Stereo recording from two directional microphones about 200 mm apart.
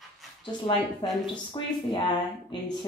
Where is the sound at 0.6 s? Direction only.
25° left (ahead or behind).